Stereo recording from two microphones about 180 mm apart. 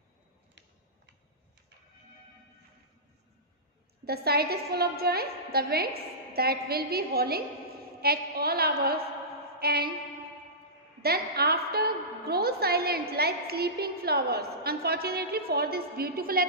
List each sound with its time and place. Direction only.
4.0 s a woman's voice: 60° right (ahead or behind)
9.6 s a sound: 60° right (ahead or behind)
11.0 s a woman's voice: 60° right (ahead or behind)